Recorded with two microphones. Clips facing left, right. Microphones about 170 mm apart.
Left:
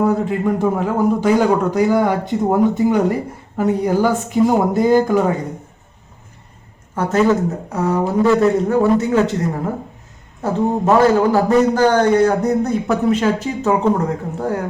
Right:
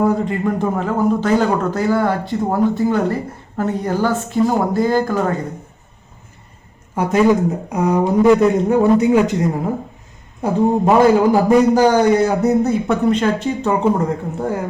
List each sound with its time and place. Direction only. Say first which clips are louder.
0.0 s a man's voice: even; centre (ahead or behind)
6.9 s a man's voice: right 1 dB; 10° right (ahead or behind)